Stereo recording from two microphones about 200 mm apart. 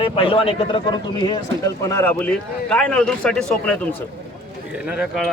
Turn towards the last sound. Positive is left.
turn(degrees=0)  # may be behind; listen again after turning